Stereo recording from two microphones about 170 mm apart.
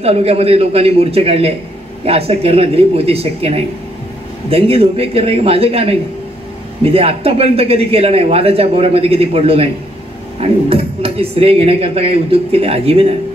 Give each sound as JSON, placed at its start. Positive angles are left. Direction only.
{"t": 0.0, "sound": "speech", "side_deg": -35}